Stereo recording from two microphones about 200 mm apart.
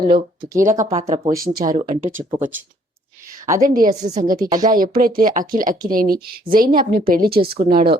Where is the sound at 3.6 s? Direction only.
45° right (ahead or behind).